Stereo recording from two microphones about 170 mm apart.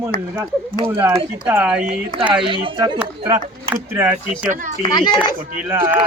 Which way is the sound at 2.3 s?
30° right (ahead or behind).